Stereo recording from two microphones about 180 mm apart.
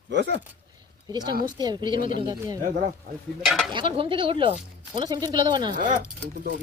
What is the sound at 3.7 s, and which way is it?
Speech, 30° right (ahead or behind).